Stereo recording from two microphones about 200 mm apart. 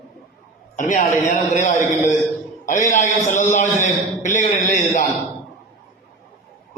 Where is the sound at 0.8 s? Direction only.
40° left (ahead or behind).